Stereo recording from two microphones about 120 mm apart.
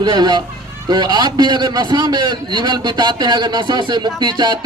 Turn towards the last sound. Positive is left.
turn(degrees=-35)  # may be behind; listen again after turning